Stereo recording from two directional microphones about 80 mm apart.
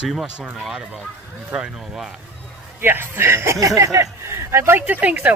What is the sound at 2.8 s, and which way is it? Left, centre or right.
Speech, right.